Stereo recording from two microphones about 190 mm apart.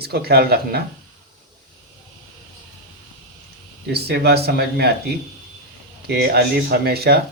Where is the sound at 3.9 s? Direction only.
55° right (ahead or behind).